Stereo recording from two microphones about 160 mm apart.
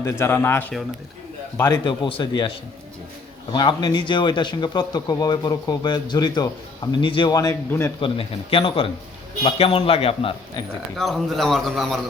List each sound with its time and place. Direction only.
0.0 s speech: 15° left (ahead or behind)
1.6 s a man's voice: 25° left (ahead or behind)
3.5 s a man's voice: 30° left (ahead or behind)
8.0 s a man's voice: 35° left (ahead or behind)
10.9 s a man's voice: centre (ahead or behind)